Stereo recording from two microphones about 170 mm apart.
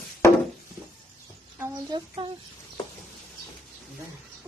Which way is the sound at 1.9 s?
25° right (ahead or behind).